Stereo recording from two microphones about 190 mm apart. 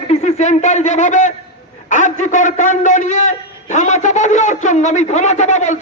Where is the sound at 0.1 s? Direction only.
35° left (ahead or behind).